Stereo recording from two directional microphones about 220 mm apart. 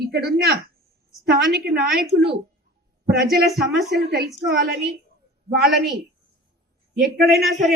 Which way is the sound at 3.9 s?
45° right (ahead or behind).